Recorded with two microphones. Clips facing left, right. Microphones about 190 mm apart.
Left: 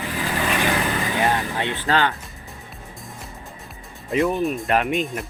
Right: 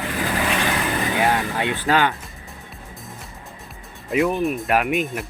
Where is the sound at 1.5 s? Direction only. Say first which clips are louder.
Right 2 dB; 10° right (ahead or behind).